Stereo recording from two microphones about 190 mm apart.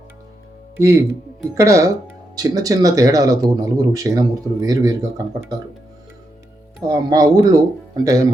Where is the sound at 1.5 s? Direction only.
15° right (ahead or behind).